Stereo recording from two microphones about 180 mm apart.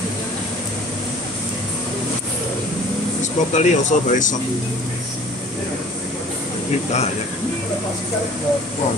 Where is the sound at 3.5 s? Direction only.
40° left (ahead or behind).